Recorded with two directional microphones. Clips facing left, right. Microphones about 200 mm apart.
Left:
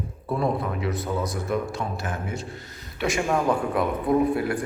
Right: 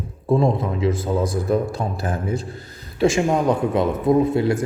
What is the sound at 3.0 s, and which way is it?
Speech, 25° right (ahead or behind).